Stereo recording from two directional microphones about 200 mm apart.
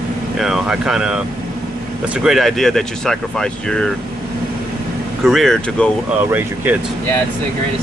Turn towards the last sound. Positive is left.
turn(degrees=-10)  # may be behind; listen again after turning